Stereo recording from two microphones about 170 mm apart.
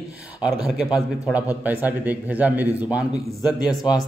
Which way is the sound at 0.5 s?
20° left (ahead or behind).